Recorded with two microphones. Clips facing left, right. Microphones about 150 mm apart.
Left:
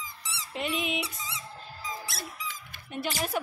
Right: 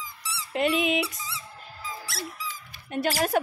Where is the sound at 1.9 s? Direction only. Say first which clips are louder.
Right 2 dB; 20° left (ahead or behind).